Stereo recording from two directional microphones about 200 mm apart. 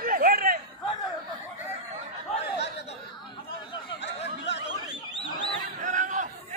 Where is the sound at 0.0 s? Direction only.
45° right (ahead or behind).